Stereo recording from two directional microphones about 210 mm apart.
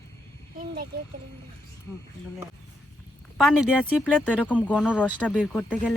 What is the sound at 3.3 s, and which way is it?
Speech, centre (ahead or behind).